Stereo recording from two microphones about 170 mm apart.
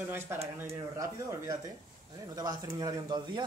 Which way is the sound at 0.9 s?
15° right (ahead or behind).